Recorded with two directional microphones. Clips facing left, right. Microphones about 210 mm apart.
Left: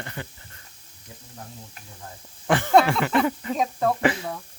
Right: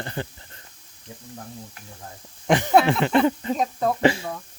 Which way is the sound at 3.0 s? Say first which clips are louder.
Right 3 dB; 25° right (ahead or behind).